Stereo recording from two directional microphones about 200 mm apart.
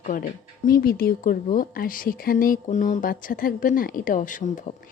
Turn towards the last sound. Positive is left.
turn(degrees=40)  # may be behind; listen again after turning